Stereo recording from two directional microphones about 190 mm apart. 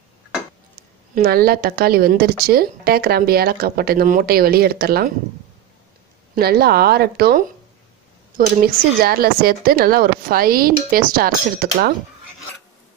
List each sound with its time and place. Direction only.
1.1 s a woman's voice: 55° right (ahead or behind)
6.3 s a woman's voice: 55° right (ahead or behind)